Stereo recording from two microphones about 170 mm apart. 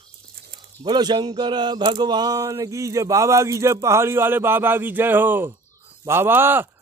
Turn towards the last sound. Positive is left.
turn(degrees=-10)  # may be behind; listen again after turning